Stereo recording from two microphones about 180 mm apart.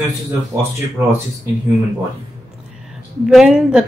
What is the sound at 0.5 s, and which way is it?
Music, 15° right (ahead or behind).